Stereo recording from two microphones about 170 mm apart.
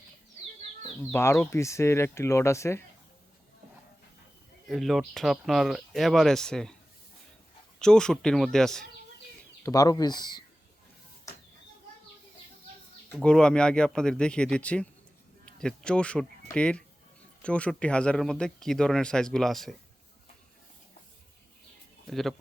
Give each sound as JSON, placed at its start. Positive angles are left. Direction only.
{"t": 1.1, "sound": "speech", "side_deg": 15}
{"t": 4.7, "sound": "speech", "side_deg": 0}
{"t": 7.8, "sound": "speech", "side_deg": 5}
{"t": 9.6, "sound": "speech", "side_deg": 20}
{"t": 13.1, "sound": "speech", "side_deg": 5}
{"t": 22.0, "sound": "speech", "side_deg": 0}